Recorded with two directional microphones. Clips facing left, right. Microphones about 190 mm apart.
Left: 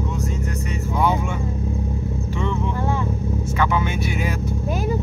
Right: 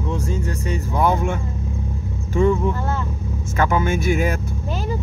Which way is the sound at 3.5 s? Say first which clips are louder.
Right 4 dB; 45° right (ahead or behind).